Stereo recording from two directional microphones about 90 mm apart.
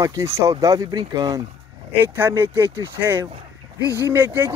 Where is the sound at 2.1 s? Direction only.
25° right (ahead or behind).